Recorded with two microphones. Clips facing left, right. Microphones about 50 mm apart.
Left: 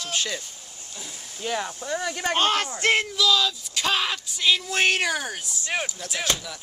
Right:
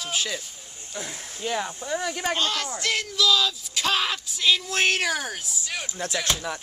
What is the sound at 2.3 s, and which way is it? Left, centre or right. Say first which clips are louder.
Speech: left 4 dB; left.